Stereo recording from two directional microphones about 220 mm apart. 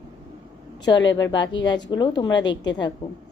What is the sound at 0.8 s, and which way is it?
A woman's voice, 20° left (ahead or behind).